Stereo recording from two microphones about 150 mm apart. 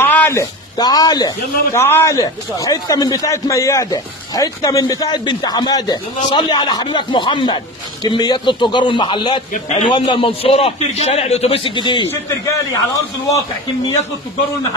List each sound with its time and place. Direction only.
0.0 s speech: 15° left (ahead or behind)
1.8 s a man's voice: 15° left (ahead or behind); by 9.4 s 35° left (ahead or behind)
9.5 s a man's voice: 50° left (ahead or behind)
9.8 s a man's voice: 35° left (ahead or behind)
12.1 s a man's voice: 20° left (ahead or behind)